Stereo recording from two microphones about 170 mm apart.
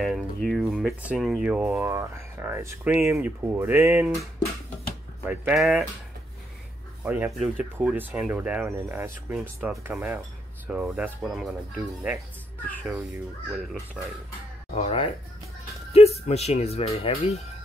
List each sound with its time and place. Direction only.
0.0 s speech: centre (ahead or behind); by 4.1 s 15° right (ahead or behind)
5.2 s speech: 10° right (ahead or behind)
7.1 s speech: 10° right (ahead or behind)
7.3 s speech: centre (ahead or behind)
14.0 s speech: 10° left (ahead or behind)
14.7 s speech: 35° left (ahead or behind)